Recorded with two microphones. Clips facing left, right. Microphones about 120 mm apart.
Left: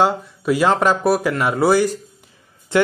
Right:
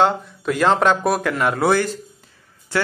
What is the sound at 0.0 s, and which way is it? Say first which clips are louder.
Speech: even; 5° left (ahead or behind).